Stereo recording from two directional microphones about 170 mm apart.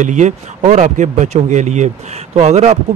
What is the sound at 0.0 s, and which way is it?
Speech, 45° right (ahead or behind).